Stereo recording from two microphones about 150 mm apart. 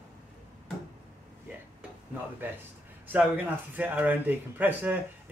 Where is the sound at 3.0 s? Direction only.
10° right (ahead or behind).